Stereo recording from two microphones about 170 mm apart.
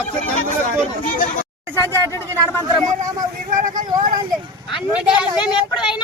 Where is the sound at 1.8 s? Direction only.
15° left (ahead or behind).